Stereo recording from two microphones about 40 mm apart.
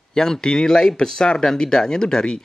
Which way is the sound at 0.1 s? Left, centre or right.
Centre.